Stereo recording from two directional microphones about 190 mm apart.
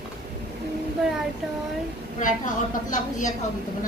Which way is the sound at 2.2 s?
40° left (ahead or behind).